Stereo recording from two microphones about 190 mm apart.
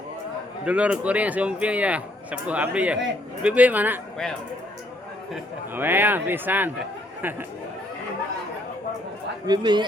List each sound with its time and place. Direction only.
0.6 s a man's voice: 5° right (ahead or behind)
5.3 s a man's voice: 10° right (ahead or behind)
9.5 s a man's voice: 25° right (ahead or behind)